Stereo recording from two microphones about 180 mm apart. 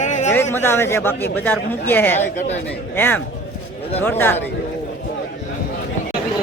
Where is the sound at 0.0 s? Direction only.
40° left (ahead or behind).